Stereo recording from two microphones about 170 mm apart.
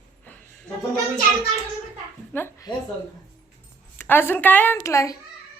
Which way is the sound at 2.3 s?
10° left (ahead or behind).